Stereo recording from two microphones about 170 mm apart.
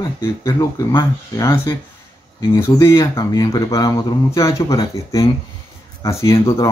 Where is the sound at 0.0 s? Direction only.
20° left (ahead or behind).